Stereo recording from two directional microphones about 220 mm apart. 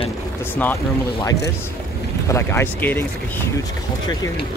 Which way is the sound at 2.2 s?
10° left (ahead or behind).